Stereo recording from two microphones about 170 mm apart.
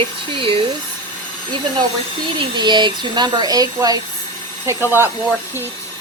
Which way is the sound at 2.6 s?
25° right (ahead or behind).